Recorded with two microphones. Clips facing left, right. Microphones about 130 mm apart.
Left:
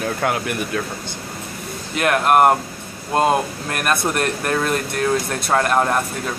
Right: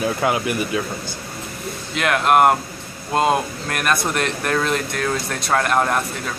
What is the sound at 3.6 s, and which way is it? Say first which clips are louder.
Speech: right 1 dB; 5° left (ahead or behind).